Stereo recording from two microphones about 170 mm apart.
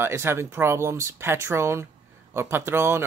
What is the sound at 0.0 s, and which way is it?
Speech, 15° right (ahead or behind).